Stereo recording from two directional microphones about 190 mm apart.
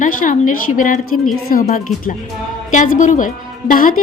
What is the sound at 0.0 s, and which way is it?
A woman's voice, 45° left (ahead or behind).